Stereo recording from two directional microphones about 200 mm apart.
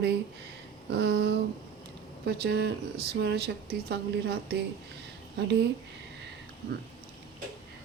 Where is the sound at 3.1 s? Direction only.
55° right (ahead or behind).